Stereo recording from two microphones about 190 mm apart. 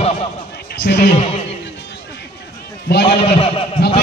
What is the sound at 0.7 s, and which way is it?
Speech, 60° left (ahead or behind).